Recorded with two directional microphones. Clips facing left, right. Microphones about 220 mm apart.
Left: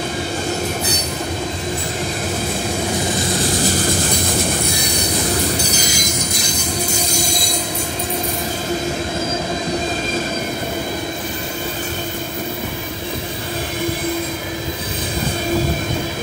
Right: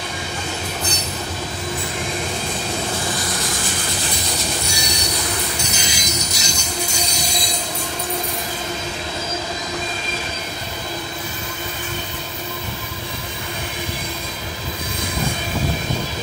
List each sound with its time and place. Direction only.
4.2 s train: 55° left (ahead or behind)
5.8 s music: 50° left (ahead or behind)
7.0 s train: 50° left (ahead or behind)